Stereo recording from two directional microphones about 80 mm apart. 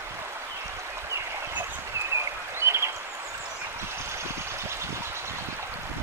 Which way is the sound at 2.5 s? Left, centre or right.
Right.